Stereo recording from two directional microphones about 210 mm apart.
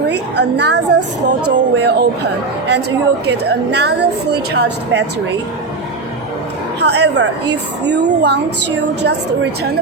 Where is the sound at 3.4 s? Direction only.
50° right (ahead or behind).